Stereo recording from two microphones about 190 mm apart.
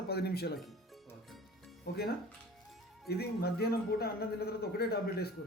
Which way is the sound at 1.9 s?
60° left (ahead or behind).